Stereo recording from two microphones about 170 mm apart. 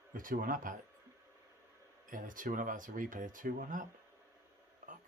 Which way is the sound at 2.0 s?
50° right (ahead or behind).